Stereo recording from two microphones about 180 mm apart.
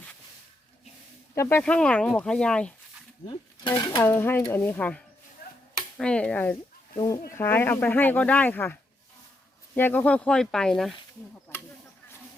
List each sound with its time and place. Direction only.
1.4 s speech: 10° left (ahead or behind)
3.2 s speech: 25° left (ahead or behind)
4.0 s speech: 10° left (ahead or behind)
6.9 s speech: 20° left (ahead or behind); by 10.9 s centre (ahead or behind)